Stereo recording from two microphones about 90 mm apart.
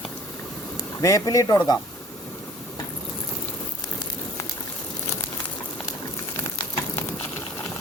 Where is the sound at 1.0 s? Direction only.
35° left (ahead or behind).